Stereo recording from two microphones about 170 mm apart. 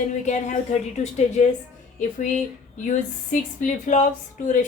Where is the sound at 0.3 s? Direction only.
45° left (ahead or behind).